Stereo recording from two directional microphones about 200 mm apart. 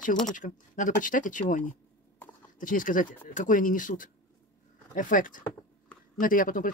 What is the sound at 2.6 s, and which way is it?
Speech, 40° left (ahead or behind).